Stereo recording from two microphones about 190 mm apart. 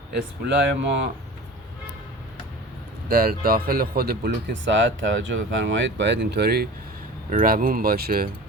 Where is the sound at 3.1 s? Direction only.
50° right (ahead or behind).